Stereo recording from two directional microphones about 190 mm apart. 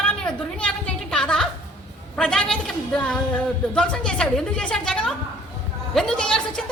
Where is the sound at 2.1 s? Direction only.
5° left (ahead or behind).